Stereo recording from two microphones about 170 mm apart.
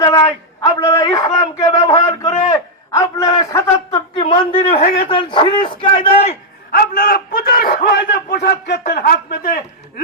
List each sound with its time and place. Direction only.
0.0 s a man's voice: 20° left (ahead or behind)
4.7 s a man's voice: 65° left (ahead or behind)
5.0 s a man's voice: 30° left (ahead or behind)
6.0 s a man's voice: 40° left (ahead or behind)
6.7 s a man's voice: 60° left (ahead or behind); by 8.8 s 85° left
8.9 s a man's voice: 65° left (ahead or behind)